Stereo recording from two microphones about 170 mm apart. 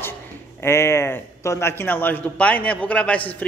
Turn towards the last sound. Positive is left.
turn(degrees=5)  # may be behind; listen again after turning